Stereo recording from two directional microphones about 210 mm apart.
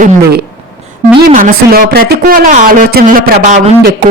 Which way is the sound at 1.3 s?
40° right (ahead or behind).